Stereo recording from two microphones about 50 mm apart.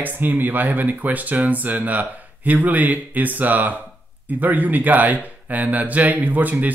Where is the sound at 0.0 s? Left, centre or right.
Right.